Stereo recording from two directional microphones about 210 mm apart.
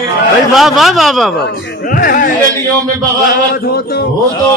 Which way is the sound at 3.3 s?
45° left (ahead or behind).